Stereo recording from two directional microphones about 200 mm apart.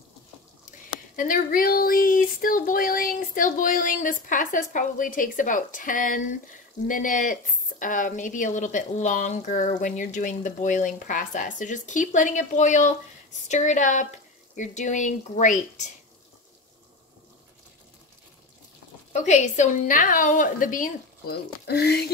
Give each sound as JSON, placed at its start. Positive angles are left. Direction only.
{"t": 0.7, "sound": "a woman's voice", "side_deg": 45}
{"t": 19.1, "sound": "a woman's voice", "side_deg": 35}